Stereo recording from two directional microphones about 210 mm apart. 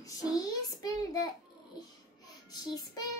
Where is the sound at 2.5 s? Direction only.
20° left (ahead or behind).